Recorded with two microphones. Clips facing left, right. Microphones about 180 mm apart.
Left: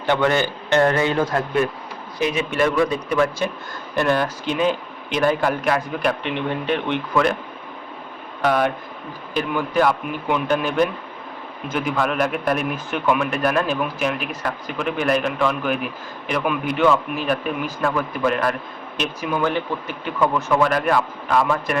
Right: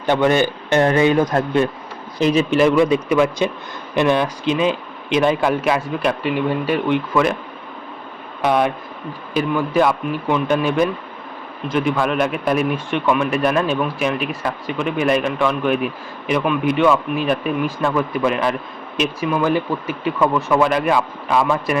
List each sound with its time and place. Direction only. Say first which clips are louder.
0.0 s a man's voice: right 3 dB; 15° right (ahead or behind)
2.3 s a man's voice: right 7 dB; 30° right (ahead or behind)
3.1 s a man's voice: right 4 dB; 15° right (ahead or behind)
4.0 s speech: right 3 dB; centre (ahead or behind)
9.3 s speech: right 3 dB; centre (ahead or behind)